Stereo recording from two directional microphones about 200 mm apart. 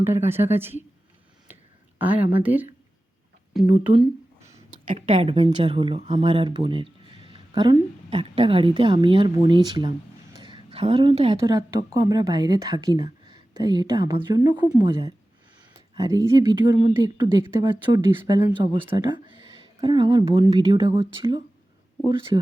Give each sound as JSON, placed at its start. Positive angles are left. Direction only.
{"t": 0.0, "sound": "speech", "side_deg": -10}
{"t": 1.5, "sound": "a sound", "side_deg": -10}
{"t": 2.0, "sound": "speech", "side_deg": -10}
{"t": 3.7, "sound": "speech", "side_deg": -10}
{"t": 4.9, "sound": "speech", "side_deg": -30}
{"t": 10.3, "sound": "a sound", "side_deg": -20}
{"t": 11.4, "sound": "speech", "side_deg": -15}